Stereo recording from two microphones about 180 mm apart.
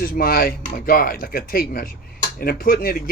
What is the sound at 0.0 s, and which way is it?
Speech, 55° left (ahead or behind).